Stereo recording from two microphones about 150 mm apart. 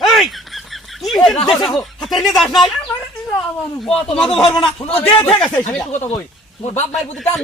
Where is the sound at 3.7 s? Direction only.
5° left (ahead or behind).